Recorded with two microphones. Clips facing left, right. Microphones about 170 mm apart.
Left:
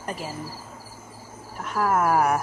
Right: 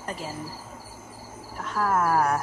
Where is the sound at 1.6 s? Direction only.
10° left (ahead or behind).